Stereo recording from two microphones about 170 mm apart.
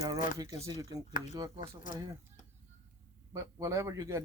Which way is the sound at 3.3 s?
20° right (ahead or behind).